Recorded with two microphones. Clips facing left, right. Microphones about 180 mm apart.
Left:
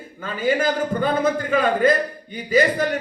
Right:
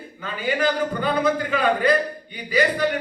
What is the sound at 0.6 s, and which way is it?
A man's voice, 45° left (ahead or behind).